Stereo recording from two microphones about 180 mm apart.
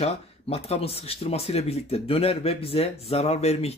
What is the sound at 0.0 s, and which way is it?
Speech, 35° left (ahead or behind).